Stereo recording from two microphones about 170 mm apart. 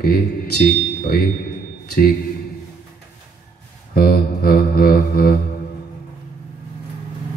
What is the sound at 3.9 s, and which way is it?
Mantra, 60° left (ahead or behind).